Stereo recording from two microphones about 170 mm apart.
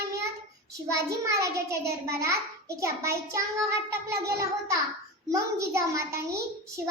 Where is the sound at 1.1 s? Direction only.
20° right (ahead or behind).